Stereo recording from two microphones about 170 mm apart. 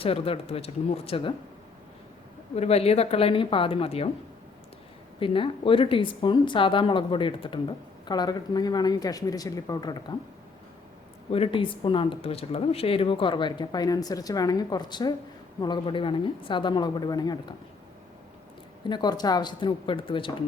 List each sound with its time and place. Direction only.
0.0 s speech: 35° left (ahead or behind)
2.6 s speech: 35° left (ahead or behind)
5.2 s speech: 30° left (ahead or behind)
11.3 s speech: 35° left (ahead or behind)
18.9 s speech: 25° left (ahead or behind)